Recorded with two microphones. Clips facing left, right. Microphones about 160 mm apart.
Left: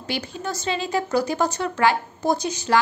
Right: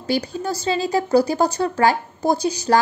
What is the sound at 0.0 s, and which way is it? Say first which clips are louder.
A woman's voice: right 6 dB; 35° right (ahead or behind).